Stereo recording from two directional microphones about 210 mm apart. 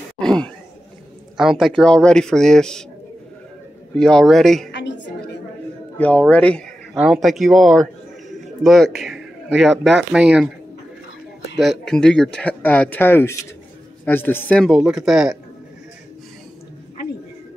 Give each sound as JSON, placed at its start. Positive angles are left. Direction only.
{"t": 0.2, "sound": "a sound", "side_deg": 5}
{"t": 1.3, "sound": "a man's voice", "side_deg": 0}
{"t": 3.9, "sound": "a man's voice", "side_deg": 5}
{"t": 4.6, "sound": "music", "side_deg": 55}
{"t": 5.9, "sound": "a man's voice", "side_deg": 5}
{"t": 8.6, "sound": "a man's voice", "side_deg": 0}
{"t": 11.5, "sound": "a man's voice", "side_deg": 0}